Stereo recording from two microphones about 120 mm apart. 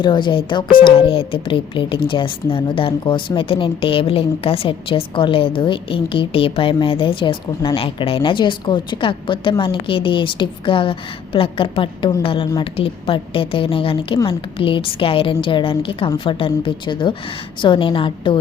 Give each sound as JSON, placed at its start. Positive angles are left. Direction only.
{"t": 0.0, "sound": "a woman's voice", "side_deg": 40}